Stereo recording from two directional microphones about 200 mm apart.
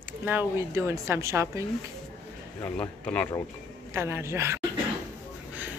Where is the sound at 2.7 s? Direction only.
5° left (ahead or behind).